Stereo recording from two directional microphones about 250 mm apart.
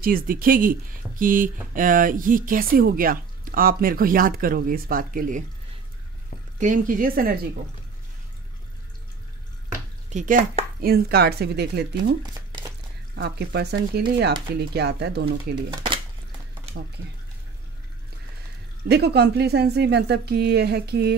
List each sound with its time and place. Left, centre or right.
0.0 s speech: right
6.6 s speech: right
10.0 s speech: right
13.1 s speech: right
15.5 s speech: centre
16.7 s a sound: right
18.9 s speech: right